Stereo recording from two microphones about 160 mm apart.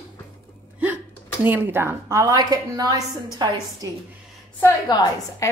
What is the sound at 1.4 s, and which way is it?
A woman's voice, 15° right (ahead or behind).